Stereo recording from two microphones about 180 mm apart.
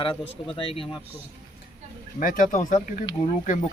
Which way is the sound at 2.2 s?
45° left (ahead or behind).